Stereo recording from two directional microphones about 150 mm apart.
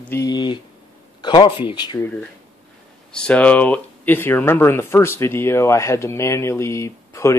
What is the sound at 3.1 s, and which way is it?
Speech, 5° left (ahead or behind).